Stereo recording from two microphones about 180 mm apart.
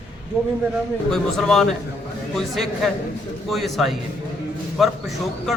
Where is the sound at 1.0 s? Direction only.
Centre (ahead or behind).